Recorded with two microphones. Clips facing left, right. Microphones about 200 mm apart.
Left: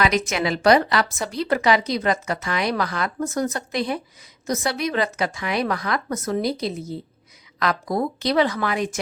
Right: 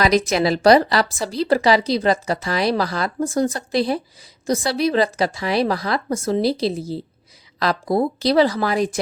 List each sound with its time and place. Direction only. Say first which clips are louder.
0.0 s speech: right 4 dB; 35° right (ahead or behind)